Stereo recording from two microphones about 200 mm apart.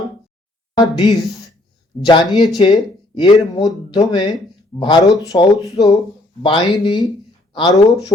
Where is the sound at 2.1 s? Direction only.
25° left (ahead or behind).